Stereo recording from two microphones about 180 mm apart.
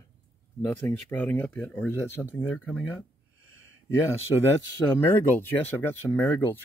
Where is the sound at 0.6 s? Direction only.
10° left (ahead or behind).